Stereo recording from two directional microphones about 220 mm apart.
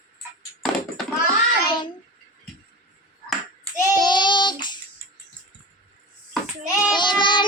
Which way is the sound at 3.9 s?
20° left (ahead or behind).